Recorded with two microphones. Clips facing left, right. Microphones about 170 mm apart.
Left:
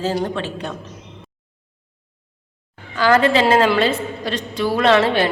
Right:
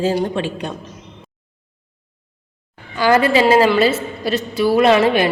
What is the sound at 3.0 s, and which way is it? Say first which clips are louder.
A woman's voice: right 1 dB; 10° right (ahead or behind).